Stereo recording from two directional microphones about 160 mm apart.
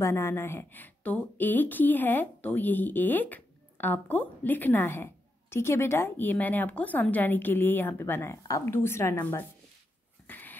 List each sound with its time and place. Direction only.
0.0 s a woman's voice: 15° left (ahead or behind)
10.2 s dog: 10° left (ahead or behind)